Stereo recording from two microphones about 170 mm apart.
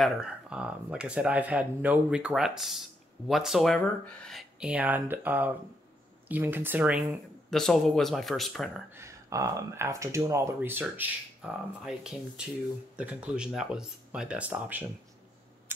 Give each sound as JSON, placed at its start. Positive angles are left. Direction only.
{"t": 0.0, "sound": "speech", "side_deg": -5}
{"t": 8.9, "sound": "speech", "side_deg": -15}